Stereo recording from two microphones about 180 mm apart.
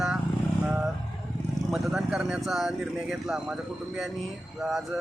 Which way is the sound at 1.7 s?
5° right (ahead or behind).